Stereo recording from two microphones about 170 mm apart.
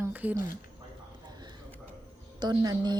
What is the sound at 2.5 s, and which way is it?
Speech, 25° right (ahead or behind).